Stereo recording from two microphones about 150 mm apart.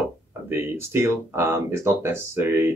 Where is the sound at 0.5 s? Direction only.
15° right (ahead or behind).